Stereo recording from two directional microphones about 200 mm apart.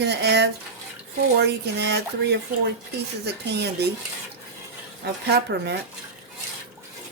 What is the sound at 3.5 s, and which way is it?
Speech, 55° right (ahead or behind).